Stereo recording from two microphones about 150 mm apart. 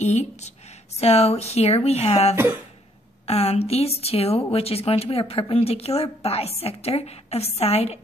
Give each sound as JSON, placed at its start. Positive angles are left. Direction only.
{"t": 0.0, "sound": "a woman's voice", "side_deg": 50}